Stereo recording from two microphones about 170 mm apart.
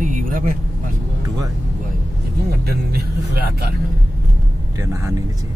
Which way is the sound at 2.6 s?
65° right (ahead or behind).